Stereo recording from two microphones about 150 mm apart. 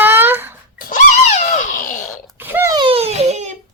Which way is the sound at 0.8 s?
70° left (ahead or behind).